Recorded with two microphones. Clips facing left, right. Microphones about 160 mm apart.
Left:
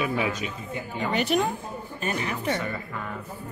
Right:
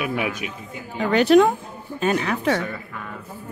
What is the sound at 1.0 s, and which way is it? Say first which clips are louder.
A woman's voice: right 10 dB; 85° right.